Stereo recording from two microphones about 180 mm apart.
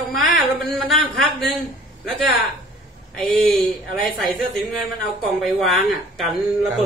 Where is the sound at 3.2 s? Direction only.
Centre (ahead or behind).